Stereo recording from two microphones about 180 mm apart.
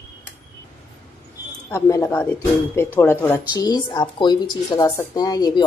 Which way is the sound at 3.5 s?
20° left (ahead or behind).